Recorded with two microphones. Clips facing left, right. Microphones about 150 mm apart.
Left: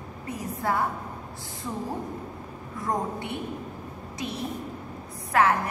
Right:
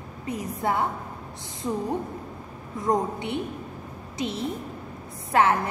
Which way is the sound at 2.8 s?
20° right (ahead or behind).